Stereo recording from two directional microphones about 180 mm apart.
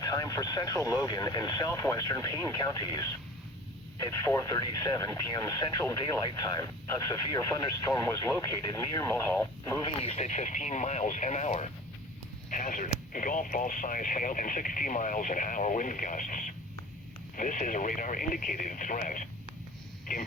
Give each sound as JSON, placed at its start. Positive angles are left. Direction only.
{"t": 0.0, "sound": "speech", "side_deg": 20}
{"t": 10.0, "sound": "speech", "side_deg": 35}